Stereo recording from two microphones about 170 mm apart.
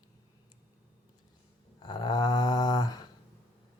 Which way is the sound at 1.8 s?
25° left (ahead or behind).